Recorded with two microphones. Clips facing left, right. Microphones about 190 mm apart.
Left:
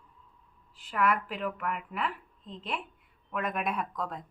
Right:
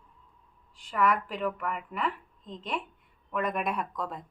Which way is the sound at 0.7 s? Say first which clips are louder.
Right 1 dB; 5° left (ahead or behind).